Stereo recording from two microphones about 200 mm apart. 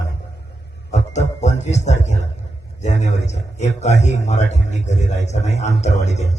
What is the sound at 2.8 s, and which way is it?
A man's voice, 35° left (ahead or behind).